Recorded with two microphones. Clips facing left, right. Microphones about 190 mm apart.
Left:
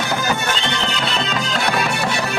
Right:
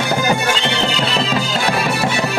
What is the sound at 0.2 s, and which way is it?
Music, 10° right (ahead or behind).